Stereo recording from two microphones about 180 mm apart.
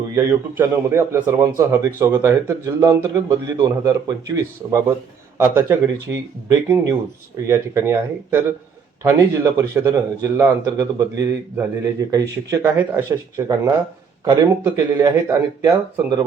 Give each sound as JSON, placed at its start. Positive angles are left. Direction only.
{"t": 0.3, "sound": "a man's voice", "side_deg": -15}